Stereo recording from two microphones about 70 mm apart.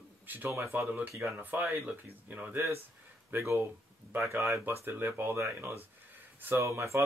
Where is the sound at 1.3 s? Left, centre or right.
Right.